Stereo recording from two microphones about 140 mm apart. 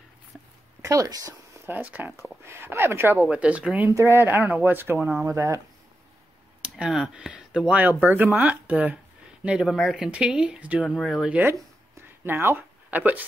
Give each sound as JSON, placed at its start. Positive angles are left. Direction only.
{"t": 0.8, "sound": "speech", "side_deg": -25}
{"t": 1.7, "sound": "speech", "side_deg": -10}
{"t": 3.8, "sound": "speech", "side_deg": -20}
{"t": 5.2, "sound": "speech", "side_deg": -20}
{"t": 6.6, "sound": "speech", "side_deg": -5}